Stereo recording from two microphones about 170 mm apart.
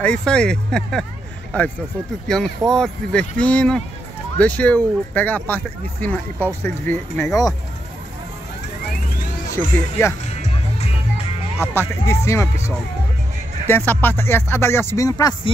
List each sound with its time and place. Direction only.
0.0 s speech: 5° left (ahead or behind)
2.2 s speech: 5° left (ahead or behind)
9.5 s speech: 15° left (ahead or behind)
11.6 s speech: 15° left (ahead or behind)